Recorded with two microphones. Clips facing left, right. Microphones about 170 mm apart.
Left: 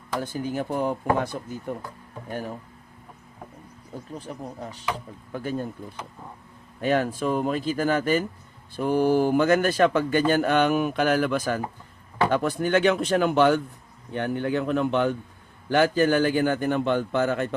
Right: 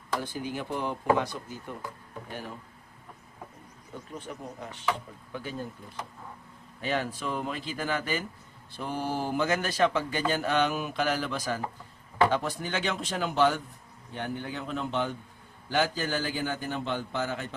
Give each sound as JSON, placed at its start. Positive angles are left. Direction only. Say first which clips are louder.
{"t": 0.2, "sound": "speech", "louder": "left 6 dB", "side_deg": 45}
{"t": 4.1, "sound": "speech", "louder": "left 3 dB", "side_deg": 35}
{"t": 5.3, "sound": "speech", "louder": "left 7 dB", "side_deg": 45}
{"t": 6.8, "sound": "a man's voice", "louder": "left 8 dB", "side_deg": 50}